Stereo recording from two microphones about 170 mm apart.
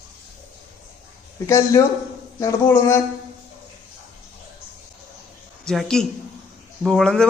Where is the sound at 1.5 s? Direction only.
20° left (ahead or behind).